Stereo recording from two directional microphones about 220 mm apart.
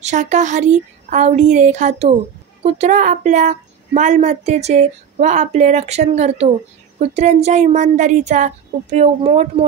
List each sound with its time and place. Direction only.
0.0 s a woman's voice: 35° right (ahead or behind)